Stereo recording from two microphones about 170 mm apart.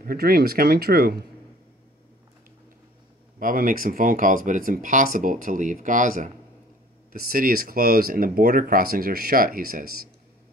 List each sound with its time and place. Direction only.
0.0 s speech: 60° right (ahead or behind)
3.3 s speech: 55° right (ahead or behind)